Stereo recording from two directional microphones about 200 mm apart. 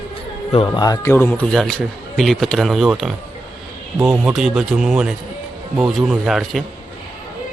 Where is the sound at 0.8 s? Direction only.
15° left (ahead or behind); by 6.6 s centre (ahead or behind).